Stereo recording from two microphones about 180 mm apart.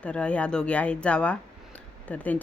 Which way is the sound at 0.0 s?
5° left (ahead or behind).